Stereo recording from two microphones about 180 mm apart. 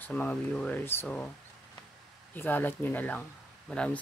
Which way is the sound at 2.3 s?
10° left (ahead or behind).